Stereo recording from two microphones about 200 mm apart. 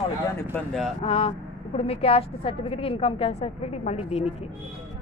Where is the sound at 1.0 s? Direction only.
30° left (ahead or behind).